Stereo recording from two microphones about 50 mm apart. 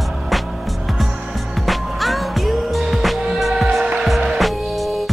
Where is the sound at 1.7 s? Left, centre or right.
Centre.